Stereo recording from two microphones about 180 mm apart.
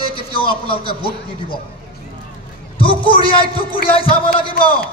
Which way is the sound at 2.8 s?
30° left (ahead or behind).